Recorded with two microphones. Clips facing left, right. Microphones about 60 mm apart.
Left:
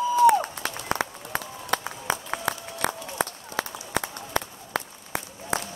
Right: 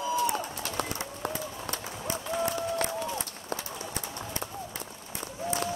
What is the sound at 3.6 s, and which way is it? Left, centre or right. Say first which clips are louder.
Run: left 8 dB; left.